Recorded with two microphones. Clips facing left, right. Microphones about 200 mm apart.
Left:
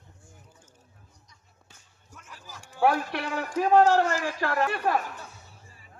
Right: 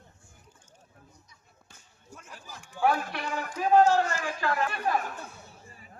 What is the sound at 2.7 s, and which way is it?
A man's voice, 60° left (ahead or behind).